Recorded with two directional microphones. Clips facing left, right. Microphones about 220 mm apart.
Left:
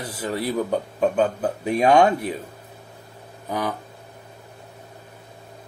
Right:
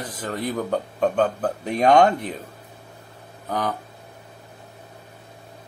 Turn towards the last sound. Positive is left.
turn(degrees=10)  # may be behind; listen again after turning